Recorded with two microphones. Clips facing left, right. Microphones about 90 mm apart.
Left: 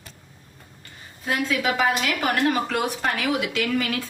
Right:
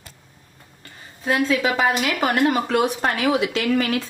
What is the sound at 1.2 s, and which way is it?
A woman's voice, 30° right (ahead or behind).